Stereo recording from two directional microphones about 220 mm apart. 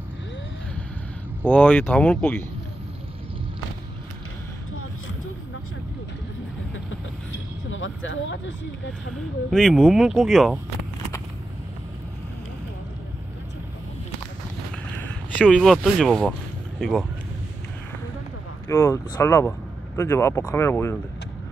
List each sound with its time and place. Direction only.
1.4 s speech: 5° left (ahead or behind)
7.7 s speech: 60° left (ahead or behind)
9.5 s speech: centre (ahead or behind)
15.3 s speech: centre (ahead or behind)
18.7 s speech: 10° left (ahead or behind)